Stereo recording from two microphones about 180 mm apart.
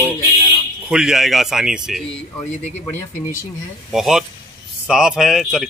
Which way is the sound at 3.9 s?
Centre (ahead or behind).